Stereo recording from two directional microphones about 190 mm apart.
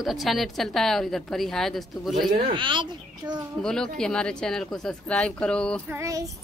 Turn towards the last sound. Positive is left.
turn(degrees=-15)  # may be behind; listen again after turning